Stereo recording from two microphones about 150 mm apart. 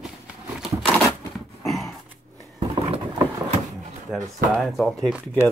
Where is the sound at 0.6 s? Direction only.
Centre (ahead or behind).